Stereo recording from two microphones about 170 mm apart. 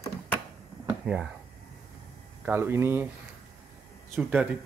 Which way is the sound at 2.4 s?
15° right (ahead or behind).